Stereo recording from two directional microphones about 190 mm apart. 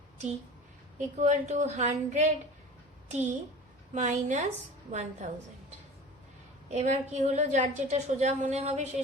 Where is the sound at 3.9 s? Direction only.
40° right (ahead or behind).